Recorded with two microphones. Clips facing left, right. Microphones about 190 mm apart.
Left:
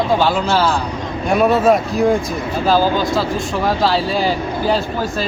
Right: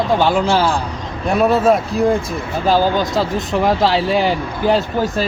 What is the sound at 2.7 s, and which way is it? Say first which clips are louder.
Speech: even; 20° right (ahead or behind).